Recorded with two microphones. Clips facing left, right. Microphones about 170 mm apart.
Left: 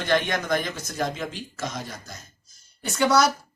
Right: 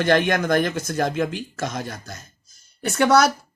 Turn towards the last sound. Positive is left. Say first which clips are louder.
# right 3 dB
turn(degrees=-55)  # may be behind; listen again after turning